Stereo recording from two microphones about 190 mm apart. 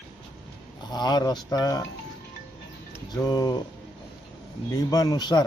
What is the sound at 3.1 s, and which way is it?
Speech, 20° left (ahead or behind).